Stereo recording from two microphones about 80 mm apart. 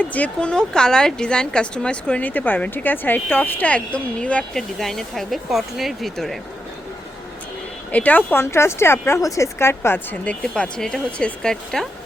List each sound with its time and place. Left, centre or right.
0.0 s speech: centre
4.5 s speech: centre
7.9 s speech: centre
8.4 s a woman's voice: left
10.4 s speech: centre